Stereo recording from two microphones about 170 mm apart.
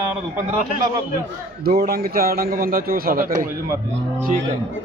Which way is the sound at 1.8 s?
65° right (ahead or behind).